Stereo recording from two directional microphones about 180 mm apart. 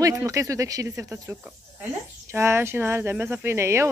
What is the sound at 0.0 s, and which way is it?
Speech, 15° right (ahead or behind).